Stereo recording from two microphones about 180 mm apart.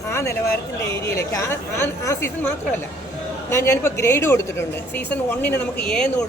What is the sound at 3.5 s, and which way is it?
Speech, 15° left (ahead or behind).